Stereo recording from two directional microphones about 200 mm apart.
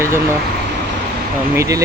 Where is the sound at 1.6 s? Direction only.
15° right (ahead or behind).